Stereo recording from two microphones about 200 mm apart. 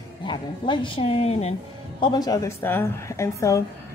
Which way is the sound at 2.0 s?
20° left (ahead or behind).